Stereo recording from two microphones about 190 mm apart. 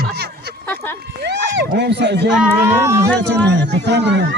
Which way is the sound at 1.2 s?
65° right (ahead or behind).